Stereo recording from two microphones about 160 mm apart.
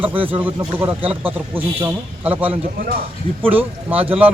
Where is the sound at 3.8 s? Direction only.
10° right (ahead or behind).